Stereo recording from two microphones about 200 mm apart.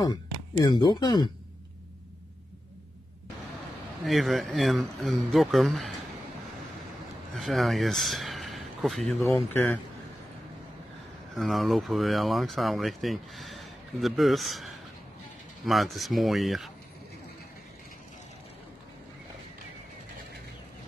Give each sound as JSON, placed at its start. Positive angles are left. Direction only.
{"t": 0.0, "sound": "speech", "side_deg": 20}
{"t": 4.0, "sound": "speech", "side_deg": 0}
{"t": 7.3, "sound": "speech", "side_deg": 0}
{"t": 11.3, "sound": "speech", "side_deg": 0}